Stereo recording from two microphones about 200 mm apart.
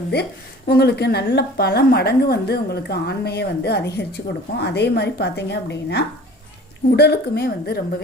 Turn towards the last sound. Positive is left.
turn(degrees=55)  # may be behind; listen again after turning